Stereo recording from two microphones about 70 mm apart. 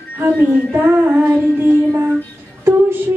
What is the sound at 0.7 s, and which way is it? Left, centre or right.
Female singing, right.